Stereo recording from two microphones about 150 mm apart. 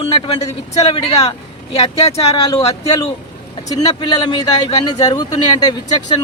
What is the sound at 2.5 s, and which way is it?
A man's voice, 25° left (ahead or behind).